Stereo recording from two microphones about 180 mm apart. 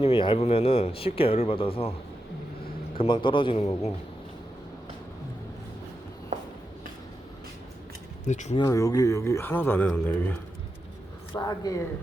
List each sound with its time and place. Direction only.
0.0 s speech: 30° left (ahead or behind)
3.0 s a man's voice: 25° left (ahead or behind)
8.2 s speech: 40° left (ahead or behind)
8.5 s a man's voice: 20° left (ahead or behind)
11.3 s a man's voice: 20° left (ahead or behind)